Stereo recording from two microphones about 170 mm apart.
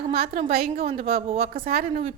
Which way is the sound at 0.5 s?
65° right (ahead or behind).